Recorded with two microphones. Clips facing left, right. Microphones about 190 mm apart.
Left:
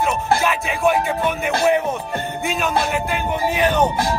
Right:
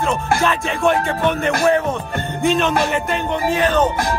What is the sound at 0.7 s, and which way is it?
Music, centre (ahead or behind).